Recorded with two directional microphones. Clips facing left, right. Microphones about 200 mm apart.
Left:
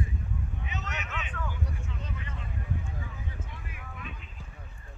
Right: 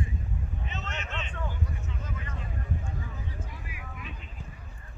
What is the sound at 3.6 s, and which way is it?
Vehicle, 5° right (ahead or behind).